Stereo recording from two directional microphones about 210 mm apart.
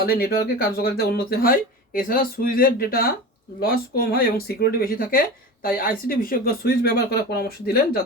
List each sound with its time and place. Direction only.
0.0 s speech: 45° left (ahead or behind)